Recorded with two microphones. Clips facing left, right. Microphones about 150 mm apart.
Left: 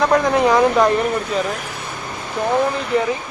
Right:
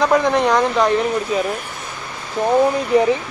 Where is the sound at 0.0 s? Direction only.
Centre (ahead or behind).